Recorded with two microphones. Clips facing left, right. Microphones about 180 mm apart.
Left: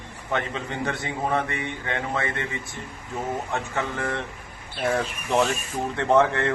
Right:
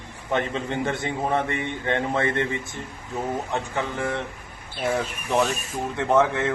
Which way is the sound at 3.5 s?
15° right (ahead or behind).